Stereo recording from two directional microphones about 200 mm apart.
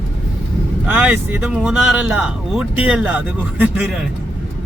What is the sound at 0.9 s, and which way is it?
Speech, 10° right (ahead or behind).